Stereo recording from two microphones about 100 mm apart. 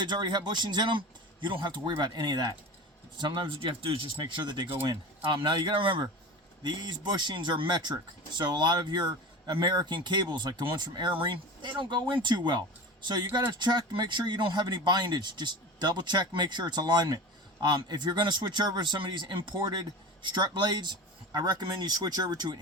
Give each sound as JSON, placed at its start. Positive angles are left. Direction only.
{"t": 0.0, "sound": "speech", "side_deg": -50}
{"t": 4.2, "sound": "speech", "side_deg": -50}